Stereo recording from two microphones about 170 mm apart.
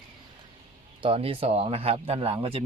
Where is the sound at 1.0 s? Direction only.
30° right (ahead or behind).